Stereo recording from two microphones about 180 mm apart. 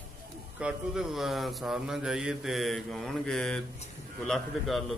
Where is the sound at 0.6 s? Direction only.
5° right (ahead or behind).